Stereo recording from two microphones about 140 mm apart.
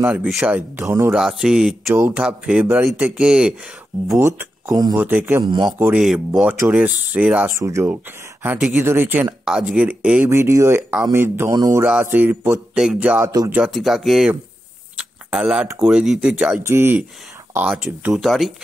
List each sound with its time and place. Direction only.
0.1 s speech: 5° right (ahead or behind)
0.6 s speech: 20° right (ahead or behind)
1.1 s speech: 5° right (ahead or behind)
4.2 s speech: 20° right (ahead or behind)
5.4 s a man's voice: 35° right (ahead or behind)
5.9 s speech: 5° right (ahead or behind)
7.5 s speech: 20° right (ahead or behind)
11.8 s speech: 10° right (ahead or behind)
13.2 s speech: 25° right (ahead or behind)
13.7 s speech: centre (ahead or behind)
18.1 s speech: centre (ahead or behind)